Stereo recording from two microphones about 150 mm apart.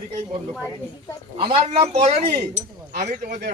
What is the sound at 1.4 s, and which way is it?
Speech, 40° right (ahead or behind).